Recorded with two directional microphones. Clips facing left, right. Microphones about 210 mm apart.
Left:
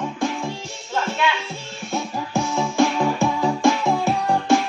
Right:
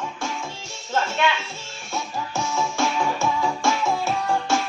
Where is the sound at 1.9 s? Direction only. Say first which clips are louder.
Left 4 dB; 15° left (ahead or behind).